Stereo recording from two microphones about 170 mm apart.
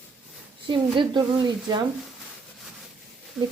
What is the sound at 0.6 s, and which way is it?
A woman's voice, 30° right (ahead or behind).